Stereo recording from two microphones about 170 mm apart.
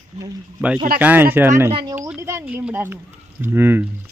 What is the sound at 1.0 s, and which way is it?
Speech, 10° right (ahead or behind).